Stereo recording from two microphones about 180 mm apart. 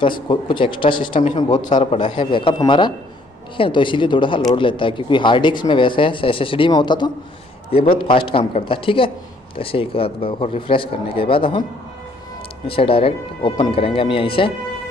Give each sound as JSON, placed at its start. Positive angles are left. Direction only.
{"t": 0.0, "sound": "speech", "side_deg": 25}
{"t": 1.5, "sound": "a man's voice", "side_deg": 45}
{"t": 2.0, "sound": "speech", "side_deg": 25}
{"t": 8.1, "sound": "a man's voice", "side_deg": 30}
{"t": 12.6, "sound": "speech", "side_deg": 30}